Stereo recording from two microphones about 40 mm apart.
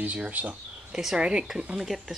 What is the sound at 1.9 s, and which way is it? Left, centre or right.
Speech, centre.